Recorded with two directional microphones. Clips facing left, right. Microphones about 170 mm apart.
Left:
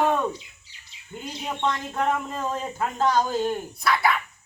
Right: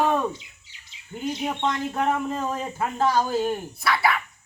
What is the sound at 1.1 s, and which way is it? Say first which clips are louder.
Speech: right 5 dB; 20° right (ahead or behind).